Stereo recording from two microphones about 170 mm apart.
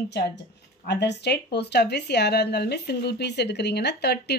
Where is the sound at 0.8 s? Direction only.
90° left.